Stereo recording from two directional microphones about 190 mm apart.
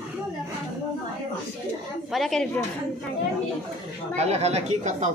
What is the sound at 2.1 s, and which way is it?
Speech, centre (ahead or behind).